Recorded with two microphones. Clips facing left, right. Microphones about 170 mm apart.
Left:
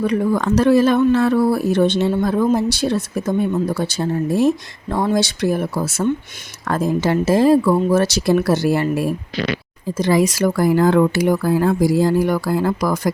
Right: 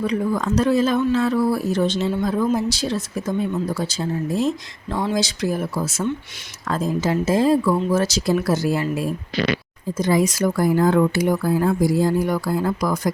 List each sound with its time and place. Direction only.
0.0 s speech: 65° left (ahead or behind)
10.0 s speech: 90° left; by 13.1 s 75° left (ahead or behind)